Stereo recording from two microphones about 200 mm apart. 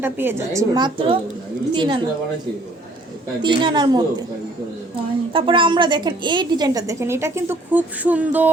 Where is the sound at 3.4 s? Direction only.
25° right (ahead or behind).